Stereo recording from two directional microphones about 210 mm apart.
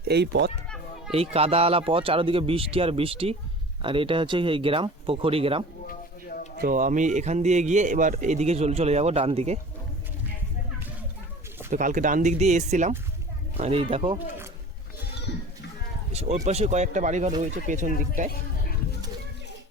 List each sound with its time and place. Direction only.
0.1 s speech: 50° right (ahead or behind)
1.1 s speech: 30° right (ahead or behind)
5.9 s a sound: 45° left (ahead or behind)
6.6 s speech: 40° right (ahead or behind)
11.7 s speech: 35° right (ahead or behind)
15.3 s children playing: 55° left (ahead or behind)
16.1 s speech: 30° right (ahead or behind)
18.3 s a sound: 45° left (ahead or behind)